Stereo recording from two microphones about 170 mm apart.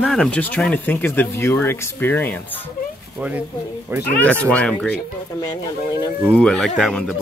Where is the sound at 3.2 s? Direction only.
5° right (ahead or behind).